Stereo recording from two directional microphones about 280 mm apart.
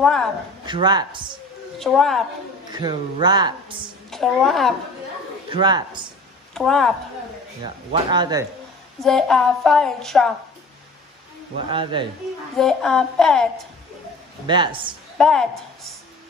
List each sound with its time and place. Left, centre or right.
0.0 s speech: centre
0.7 s a woman's voice: centre
1.8 s a woman's voice: centre
2.7 s a woman's voice: centre
4.1 s a woman's voice: centre
5.5 s a woman's voice: centre
6.5 s speech: centre
7.6 s a woman's voice: centre
9.0 s a woman's voice: centre
11.7 s a woman's voice: centre
12.5 s a woman's voice: centre
14.4 s a woman's voice: centre
15.1 s a woman's voice: centre